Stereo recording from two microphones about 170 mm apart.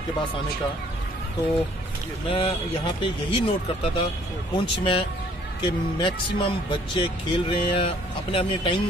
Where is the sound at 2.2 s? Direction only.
30° left (ahead or behind).